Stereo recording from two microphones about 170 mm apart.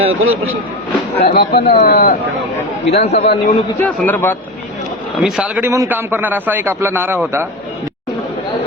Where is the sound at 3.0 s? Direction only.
40° left (ahead or behind).